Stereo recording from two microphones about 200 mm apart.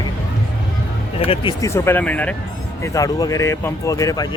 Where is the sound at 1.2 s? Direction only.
30° left (ahead or behind).